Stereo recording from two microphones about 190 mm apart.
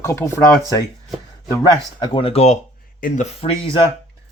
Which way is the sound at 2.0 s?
30° left (ahead or behind).